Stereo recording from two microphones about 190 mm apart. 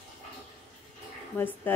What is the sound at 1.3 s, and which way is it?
Speech, 10° left (ahead or behind).